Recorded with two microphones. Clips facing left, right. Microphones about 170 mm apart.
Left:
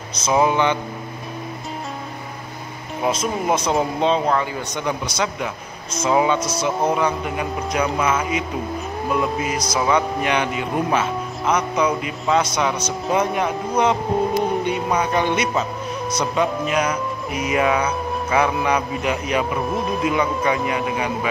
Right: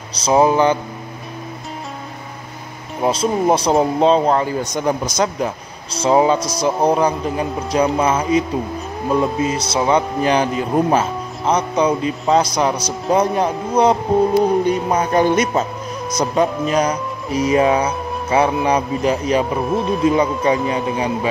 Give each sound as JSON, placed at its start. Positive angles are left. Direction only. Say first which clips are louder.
{"t": 0.1, "sound": "speech", "louder": "right 4 dB", "side_deg": -30}
{"t": 3.0, "sound": "speech", "louder": "right 5 dB", "side_deg": -30}